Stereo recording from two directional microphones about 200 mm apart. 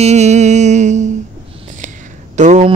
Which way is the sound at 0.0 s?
35° right (ahead or behind).